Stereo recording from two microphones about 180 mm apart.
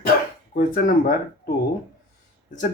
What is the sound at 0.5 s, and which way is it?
Speech, 55° left (ahead or behind).